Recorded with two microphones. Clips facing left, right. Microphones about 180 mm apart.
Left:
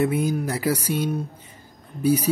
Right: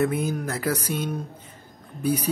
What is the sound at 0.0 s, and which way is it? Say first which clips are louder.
A man's voice: left 2 dB; 10° left (ahead or behind).